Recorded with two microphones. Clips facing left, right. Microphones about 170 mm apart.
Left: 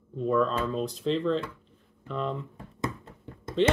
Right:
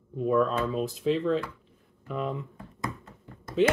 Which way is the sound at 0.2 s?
10° right (ahead or behind).